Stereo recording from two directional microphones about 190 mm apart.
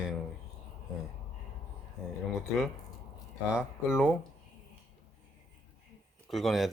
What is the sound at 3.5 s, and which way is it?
Speech, 5° right (ahead or behind).